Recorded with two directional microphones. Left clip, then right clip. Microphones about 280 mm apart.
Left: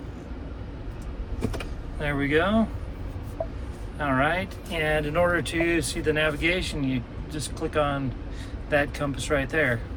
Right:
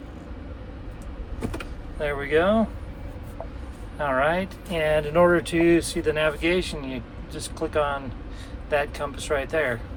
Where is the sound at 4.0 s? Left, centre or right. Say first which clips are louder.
Right 2 dB; centre.